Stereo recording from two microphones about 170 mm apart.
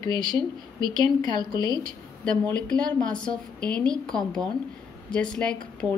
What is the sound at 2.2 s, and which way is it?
A woman's voice, 5° left (ahead or behind).